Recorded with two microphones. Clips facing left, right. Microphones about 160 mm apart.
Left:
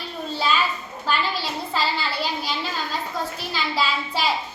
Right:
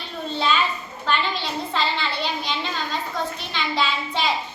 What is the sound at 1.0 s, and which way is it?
A woman's voice, 5° left (ahead or behind).